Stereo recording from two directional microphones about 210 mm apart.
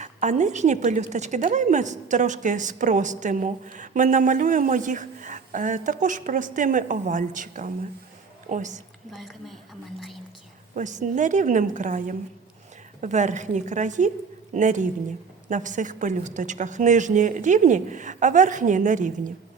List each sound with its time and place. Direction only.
0.0 s a woman's voice: 35° right (ahead or behind)
9.1 s a woman's voice: centre (ahead or behind)
10.8 s a woman's voice: 35° right (ahead or behind)